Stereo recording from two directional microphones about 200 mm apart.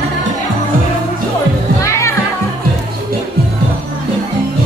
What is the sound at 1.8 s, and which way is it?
Music, 15° left (ahead or behind).